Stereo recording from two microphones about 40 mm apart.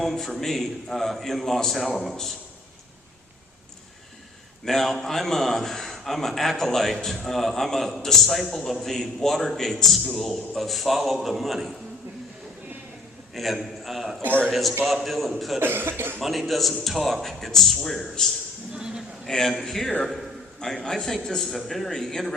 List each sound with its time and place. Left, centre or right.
0.0 s a man's voice: centre
4.6 s a man's voice: centre
13.3 s a man's voice: centre
15.5 s cough: right
16.2 s a man's voice: centre
18.7 s a man's voice: centre
19.3 s a man's voice: centre